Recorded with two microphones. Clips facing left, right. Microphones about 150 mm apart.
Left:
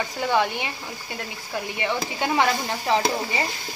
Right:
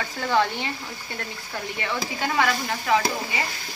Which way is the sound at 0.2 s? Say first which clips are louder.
Even; 15° left (ahead or behind).